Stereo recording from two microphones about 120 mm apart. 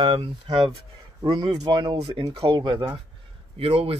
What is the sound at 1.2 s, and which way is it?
Speech, 35° right (ahead or behind).